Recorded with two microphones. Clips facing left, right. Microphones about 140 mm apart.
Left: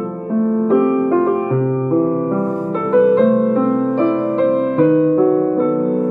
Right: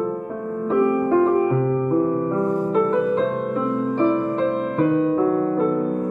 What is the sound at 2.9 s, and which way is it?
Music, 75° left (ahead or behind).